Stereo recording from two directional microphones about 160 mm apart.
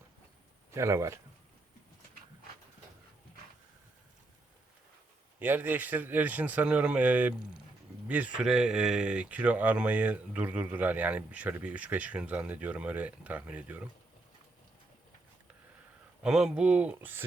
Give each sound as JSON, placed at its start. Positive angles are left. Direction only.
{"t": 0.7, "sound": "speech", "side_deg": -20}
{"t": 5.4, "sound": "speech", "side_deg": -10}
{"t": 16.2, "sound": "speech", "side_deg": -5}